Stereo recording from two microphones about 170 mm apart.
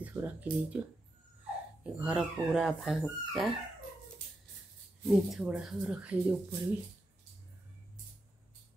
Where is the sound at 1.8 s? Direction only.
5° right (ahead or behind).